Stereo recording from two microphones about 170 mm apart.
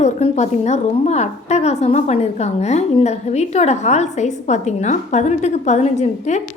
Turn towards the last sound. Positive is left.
turn(degrees=45)  # may be behind; listen again after turning